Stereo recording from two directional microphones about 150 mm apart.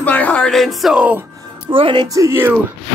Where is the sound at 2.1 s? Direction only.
20° right (ahead or behind).